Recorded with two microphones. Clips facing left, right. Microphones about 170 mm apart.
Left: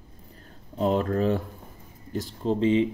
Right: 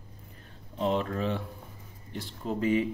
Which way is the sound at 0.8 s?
40° left (ahead or behind).